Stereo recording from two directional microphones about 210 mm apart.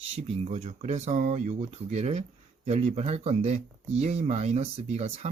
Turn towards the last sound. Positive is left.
turn(degrees=-30)  # may be behind; listen again after turning